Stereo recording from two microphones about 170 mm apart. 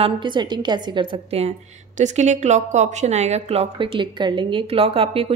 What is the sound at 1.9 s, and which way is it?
Speech, 45° right (ahead or behind).